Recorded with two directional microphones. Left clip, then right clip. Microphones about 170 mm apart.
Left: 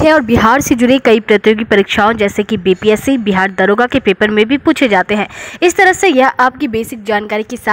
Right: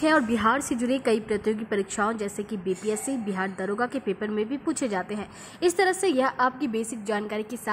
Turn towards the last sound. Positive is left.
turn(degrees=45)  # may be behind; listen again after turning